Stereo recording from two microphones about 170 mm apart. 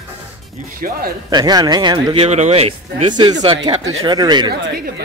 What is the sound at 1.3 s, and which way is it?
Speech, 25° right (ahead or behind).